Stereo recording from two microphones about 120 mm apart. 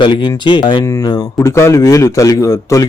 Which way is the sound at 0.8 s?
30° left (ahead or behind).